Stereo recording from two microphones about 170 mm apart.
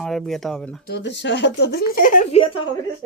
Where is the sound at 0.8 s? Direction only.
80° left; by 2.4 s 50° left (ahead or behind).